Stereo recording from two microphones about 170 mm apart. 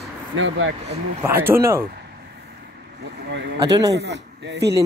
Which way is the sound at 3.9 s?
90° right.